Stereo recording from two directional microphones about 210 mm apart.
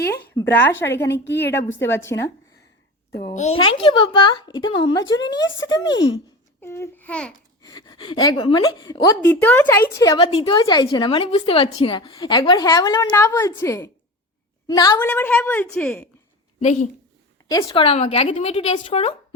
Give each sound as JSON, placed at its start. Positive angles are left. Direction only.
{"t": 0.3, "sound": "a woman's voice", "side_deg": 10}
{"t": 1.2, "sound": "a woman's voice", "side_deg": 55}
{"t": 1.5, "sound": "a woman's voice", "side_deg": 10}
{"t": 3.6, "sound": "a woman's voice", "side_deg": 25}
{"t": 6.6, "sound": "a woman's voice", "side_deg": 10}
{"t": 7.6, "sound": "a woman's voice", "side_deg": 20}
{"t": 16.6, "sound": "speech", "side_deg": 35}
{"t": 17.5, "sound": "a woman's voice", "side_deg": 20}